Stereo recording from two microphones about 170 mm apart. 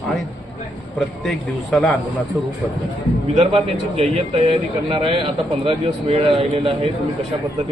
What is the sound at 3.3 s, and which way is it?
Speech, 35° right (ahead or behind).